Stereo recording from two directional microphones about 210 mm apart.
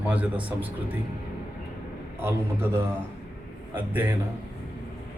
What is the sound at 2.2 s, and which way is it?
Speech, 10° right (ahead or behind).